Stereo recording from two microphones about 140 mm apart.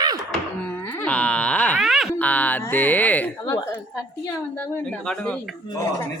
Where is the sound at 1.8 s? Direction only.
Centre (ahead or behind).